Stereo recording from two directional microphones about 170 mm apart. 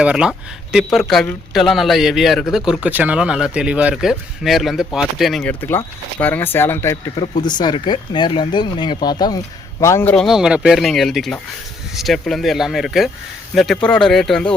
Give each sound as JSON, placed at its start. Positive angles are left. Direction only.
{"t": 0.0, "sound": "a man's voice", "side_deg": -5}
{"t": 10.2, "sound": "speech", "side_deg": -5}